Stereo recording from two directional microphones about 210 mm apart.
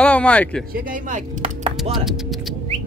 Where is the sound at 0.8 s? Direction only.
40° right (ahead or behind).